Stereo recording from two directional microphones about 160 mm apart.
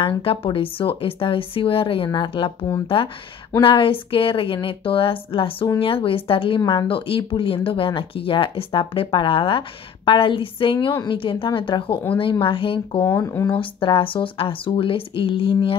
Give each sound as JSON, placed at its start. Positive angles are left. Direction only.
{"t": 0.0, "sound": "speech", "side_deg": 35}
{"t": 13.0, "sound": "speech", "side_deg": 15}
{"t": 13.5, "sound": "speech", "side_deg": 35}